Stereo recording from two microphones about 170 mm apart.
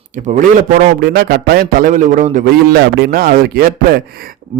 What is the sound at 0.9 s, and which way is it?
A man's voice, 65° right (ahead or behind).